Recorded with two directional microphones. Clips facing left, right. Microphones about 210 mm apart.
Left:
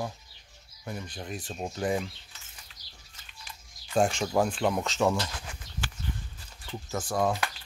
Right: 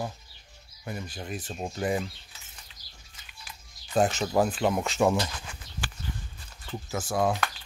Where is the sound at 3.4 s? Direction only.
5° right (ahead or behind).